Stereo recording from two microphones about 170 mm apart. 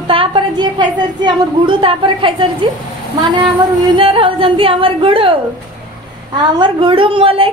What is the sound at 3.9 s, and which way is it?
A woman's voice, 30° right (ahead or behind).